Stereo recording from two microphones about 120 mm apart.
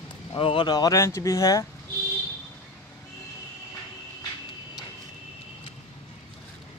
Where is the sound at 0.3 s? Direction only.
45° left (ahead or behind).